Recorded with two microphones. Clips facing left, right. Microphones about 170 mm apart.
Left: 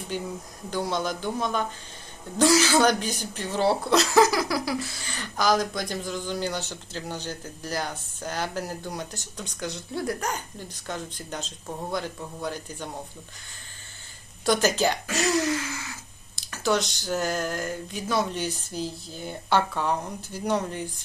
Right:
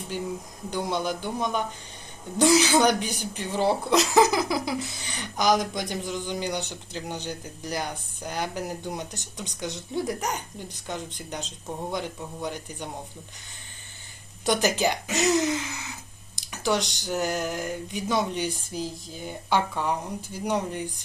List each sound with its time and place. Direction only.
0.7 s speech: 15° right (ahead or behind)
14.4 s speech: 15° right (ahead or behind)